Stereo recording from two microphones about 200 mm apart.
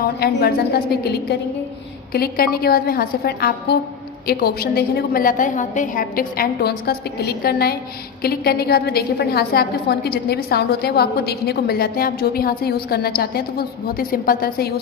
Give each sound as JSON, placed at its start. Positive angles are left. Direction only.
{"t": 0.2, "sound": "a woman's voice", "side_deg": 50}
{"t": 2.1, "sound": "a woman's voice", "side_deg": 50}